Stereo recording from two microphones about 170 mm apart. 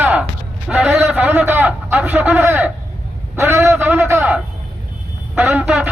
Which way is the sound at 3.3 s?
15° right (ahead or behind).